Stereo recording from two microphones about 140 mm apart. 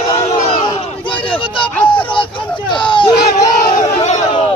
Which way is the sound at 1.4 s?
40° left (ahead or behind).